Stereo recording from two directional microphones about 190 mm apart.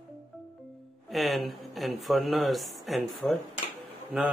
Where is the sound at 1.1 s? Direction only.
Centre (ahead or behind).